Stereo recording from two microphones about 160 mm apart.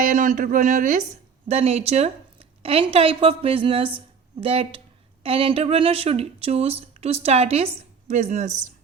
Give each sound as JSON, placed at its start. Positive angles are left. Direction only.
{"t": 0.0, "sound": "speech", "side_deg": -55}
{"t": 1.5, "sound": "speech", "side_deg": -40}